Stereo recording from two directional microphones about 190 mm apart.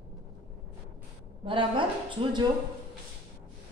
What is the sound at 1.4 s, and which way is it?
A woman's voice, 25° right (ahead or behind).